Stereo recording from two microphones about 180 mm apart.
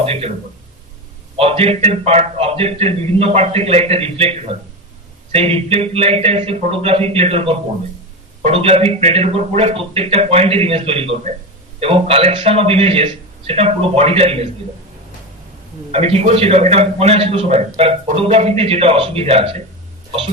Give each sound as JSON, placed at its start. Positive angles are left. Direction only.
{"t": 0.0, "sound": "speech", "side_deg": -35}
{"t": 1.4, "sound": "a man's voice", "side_deg": -35}
{"t": 15.9, "sound": "a man's voice", "side_deg": -35}